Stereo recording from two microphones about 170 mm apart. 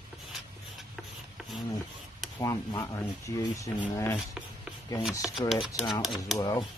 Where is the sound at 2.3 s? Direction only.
20° left (ahead or behind).